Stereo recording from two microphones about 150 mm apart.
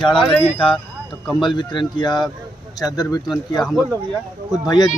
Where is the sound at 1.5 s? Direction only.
30° left (ahead or behind).